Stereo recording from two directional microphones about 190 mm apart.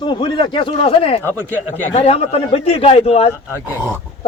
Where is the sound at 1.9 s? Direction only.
35° left (ahead or behind).